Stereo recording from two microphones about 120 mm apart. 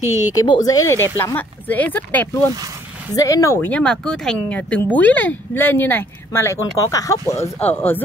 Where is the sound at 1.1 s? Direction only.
15° left (ahead or behind).